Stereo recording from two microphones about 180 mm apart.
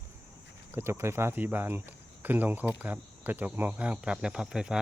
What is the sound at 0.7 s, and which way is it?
Speech, 15° right (ahead or behind).